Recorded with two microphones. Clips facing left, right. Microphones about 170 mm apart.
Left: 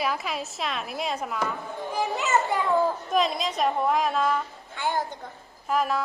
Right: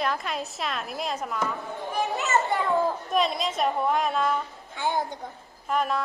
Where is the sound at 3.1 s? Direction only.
Centre (ahead or behind).